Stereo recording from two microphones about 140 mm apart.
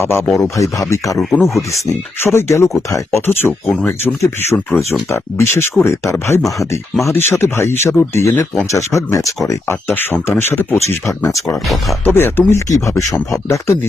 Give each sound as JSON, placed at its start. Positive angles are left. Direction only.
{"t": 0.0, "sound": "speech", "side_deg": 15}
{"t": 1.4, "sound": "speech", "side_deg": 0}
{"t": 1.7, "sound": "speech", "side_deg": 20}
{"t": 11.4, "sound": "speech", "side_deg": 0}
{"t": 12.0, "sound": "speech", "side_deg": 15}